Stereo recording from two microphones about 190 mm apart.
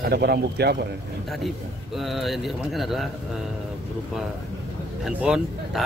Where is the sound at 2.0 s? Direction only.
Centre (ahead or behind).